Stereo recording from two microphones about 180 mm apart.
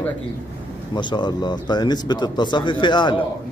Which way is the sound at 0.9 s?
25° left (ahead or behind).